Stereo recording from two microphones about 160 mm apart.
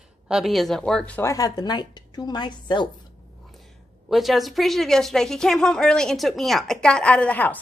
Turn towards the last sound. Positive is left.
turn(degrees=10)  # may be behind; listen again after turning